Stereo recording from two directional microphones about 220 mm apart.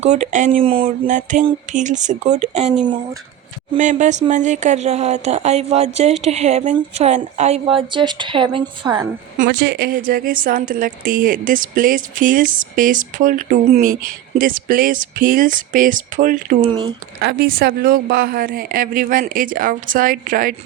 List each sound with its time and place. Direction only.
0.0 s speech: 30° right (ahead or behind)
3.8 s a woman's voice: 35° right (ahead or behind); by 9.0 s 15° right (ahead or behind)
9.5 s speech: 50° right (ahead or behind)